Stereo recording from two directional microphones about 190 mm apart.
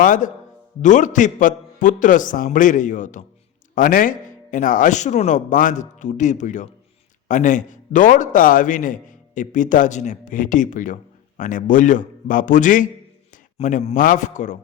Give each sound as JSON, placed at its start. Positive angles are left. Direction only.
{"t": 0.0, "sound": "a man's voice", "side_deg": 45}